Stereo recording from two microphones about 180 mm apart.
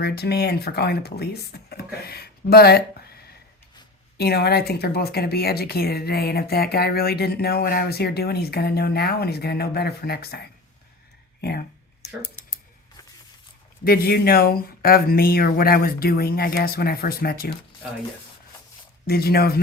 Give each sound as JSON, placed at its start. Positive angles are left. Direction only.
{"t": 0.0, "sound": "speech", "side_deg": 65}
{"t": 4.2, "sound": "speech", "side_deg": 60}
{"t": 13.8, "sound": "speech", "side_deg": 55}
{"t": 19.0, "sound": "speech", "side_deg": 60}